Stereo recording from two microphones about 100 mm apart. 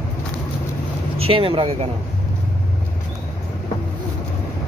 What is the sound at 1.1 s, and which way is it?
Speech, 70° right (ahead or behind).